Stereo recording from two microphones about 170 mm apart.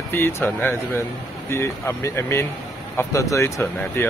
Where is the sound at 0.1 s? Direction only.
15° left (ahead or behind).